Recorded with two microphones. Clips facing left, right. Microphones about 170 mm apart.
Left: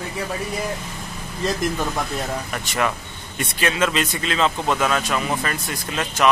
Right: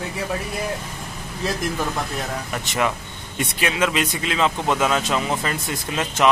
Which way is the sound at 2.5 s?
20° right (ahead or behind).